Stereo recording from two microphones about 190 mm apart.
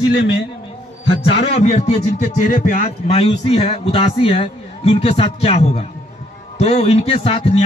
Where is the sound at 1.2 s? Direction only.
30° left (ahead or behind).